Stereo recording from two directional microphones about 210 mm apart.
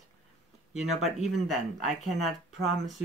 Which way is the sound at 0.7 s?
Centre (ahead or behind).